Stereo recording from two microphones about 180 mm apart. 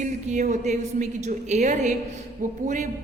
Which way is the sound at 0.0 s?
40° right (ahead or behind).